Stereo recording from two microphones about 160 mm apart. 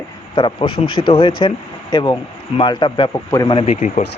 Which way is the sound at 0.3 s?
30° left (ahead or behind).